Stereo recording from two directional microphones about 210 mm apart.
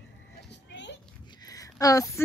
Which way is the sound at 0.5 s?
55° left (ahead or behind).